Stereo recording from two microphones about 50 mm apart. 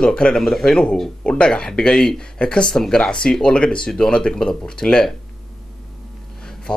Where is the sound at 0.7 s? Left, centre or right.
Centre.